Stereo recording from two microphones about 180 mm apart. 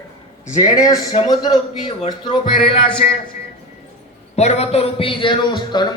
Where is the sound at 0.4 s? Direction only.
20° left (ahead or behind).